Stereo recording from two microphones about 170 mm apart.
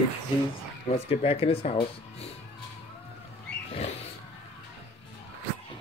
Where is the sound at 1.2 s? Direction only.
35° left (ahead or behind).